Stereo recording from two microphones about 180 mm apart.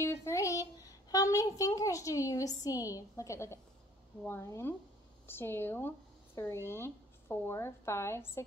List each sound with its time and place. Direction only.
0.0 s a woman's voice: 15° left (ahead or behind)